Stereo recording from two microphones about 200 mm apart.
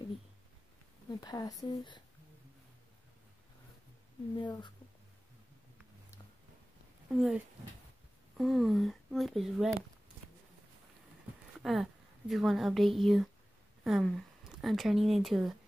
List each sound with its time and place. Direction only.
1.2 s speech: 20° left (ahead or behind)
4.4 s speech: 20° left (ahead or behind)
7.1 s speech: centre (ahead or behind)
8.4 s speech: centre (ahead or behind)
11.6 s speech: centre (ahead or behind)